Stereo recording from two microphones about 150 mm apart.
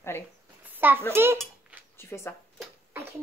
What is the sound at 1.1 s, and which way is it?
Speech, 15° right (ahead or behind).